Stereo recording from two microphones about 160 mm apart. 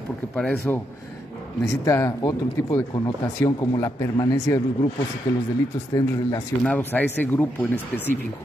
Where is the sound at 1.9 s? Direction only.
20° left (ahead or behind).